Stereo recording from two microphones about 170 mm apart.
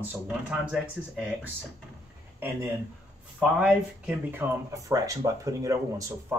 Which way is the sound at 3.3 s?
5° right (ahead or behind).